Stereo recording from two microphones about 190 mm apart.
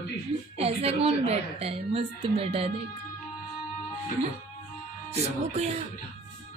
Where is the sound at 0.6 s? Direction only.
30° right (ahead or behind).